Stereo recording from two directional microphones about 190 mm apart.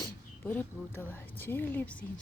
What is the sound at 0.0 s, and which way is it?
Speech, 10° left (ahead or behind).